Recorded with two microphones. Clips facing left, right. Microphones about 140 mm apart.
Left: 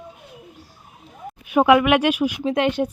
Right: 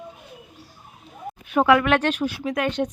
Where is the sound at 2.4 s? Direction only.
30° left (ahead or behind).